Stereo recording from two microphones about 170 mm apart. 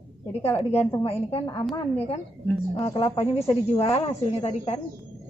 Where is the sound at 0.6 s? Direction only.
35° left (ahead or behind).